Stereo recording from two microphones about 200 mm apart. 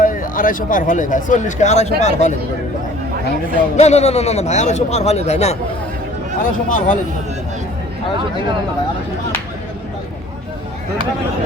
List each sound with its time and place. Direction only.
0.0 s a man's voice: 40° left (ahead or behind)
3.8 s a man's voice: 35° left (ahead or behind)